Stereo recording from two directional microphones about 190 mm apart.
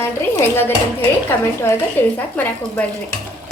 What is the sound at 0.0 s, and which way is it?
Speech, 10° left (ahead or behind).